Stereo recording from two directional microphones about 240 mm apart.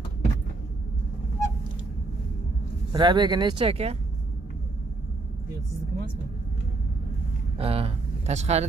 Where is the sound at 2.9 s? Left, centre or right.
Centre.